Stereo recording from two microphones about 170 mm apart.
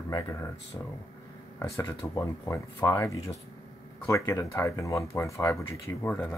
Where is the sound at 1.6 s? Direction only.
15° left (ahead or behind).